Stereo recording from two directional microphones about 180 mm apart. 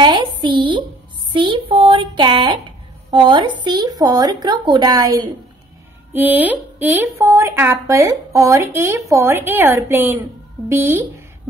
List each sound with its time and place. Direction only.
0.0 s a woman's voice: 25° right (ahead or behind)
6.1 s speech: 10° right (ahead or behind)